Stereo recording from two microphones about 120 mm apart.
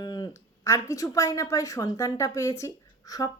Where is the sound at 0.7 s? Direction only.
25° left (ahead or behind).